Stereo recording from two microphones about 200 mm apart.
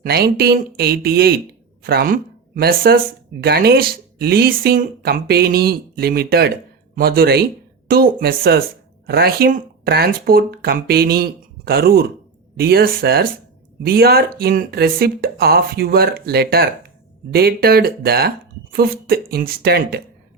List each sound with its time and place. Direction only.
0.0 s speech: 50° right (ahead or behind)